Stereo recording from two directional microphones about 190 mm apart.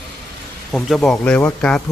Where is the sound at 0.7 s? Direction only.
Centre (ahead or behind).